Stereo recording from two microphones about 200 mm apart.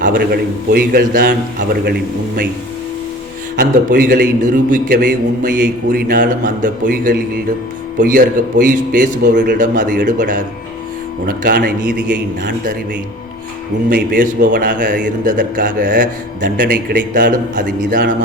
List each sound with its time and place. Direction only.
0.0 s a man's voice: 45° right (ahead or behind)
3.6 s a man's voice: 45° right (ahead or behind)
13.9 s a man's voice: 45° right (ahead or behind)